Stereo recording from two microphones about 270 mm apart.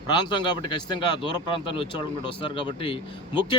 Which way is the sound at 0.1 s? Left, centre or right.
Centre.